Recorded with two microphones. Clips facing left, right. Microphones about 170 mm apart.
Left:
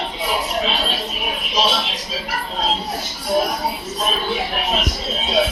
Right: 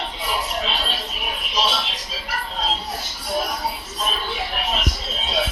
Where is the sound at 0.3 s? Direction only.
15° left (ahead or behind).